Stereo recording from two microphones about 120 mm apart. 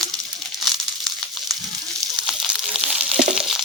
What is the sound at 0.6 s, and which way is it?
Crumpling, centre (ahead or behind).